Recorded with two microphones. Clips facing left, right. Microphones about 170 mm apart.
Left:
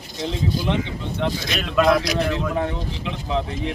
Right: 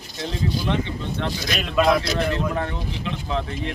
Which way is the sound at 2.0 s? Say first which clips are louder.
Left 1 dB; 15° left (ahead or behind).